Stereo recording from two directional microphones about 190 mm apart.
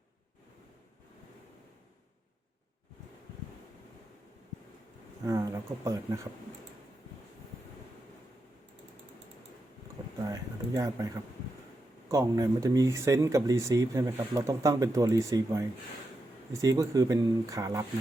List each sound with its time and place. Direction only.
5.2 s speech: 15° right (ahead or behind)
10.2 s a sound: 20° right (ahead or behind)
12.0 s speech: 15° right (ahead or behind)